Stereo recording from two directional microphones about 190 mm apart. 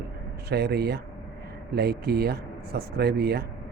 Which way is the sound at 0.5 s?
60° right (ahead or behind).